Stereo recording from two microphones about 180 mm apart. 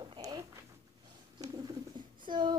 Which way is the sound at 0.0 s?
25° right (ahead or behind).